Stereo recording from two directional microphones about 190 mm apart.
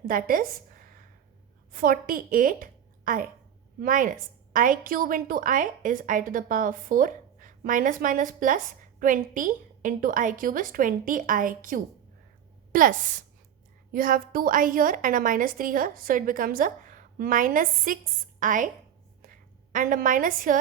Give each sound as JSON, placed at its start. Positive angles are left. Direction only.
{"t": 0.0, "sound": "a woman's voice", "side_deg": -50}